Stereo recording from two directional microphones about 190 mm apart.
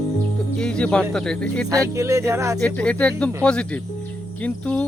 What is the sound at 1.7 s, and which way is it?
Speech, 15° right (ahead or behind).